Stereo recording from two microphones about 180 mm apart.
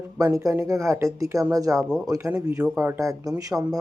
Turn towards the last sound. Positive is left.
turn(degrees=-20)  # may be behind; listen again after turning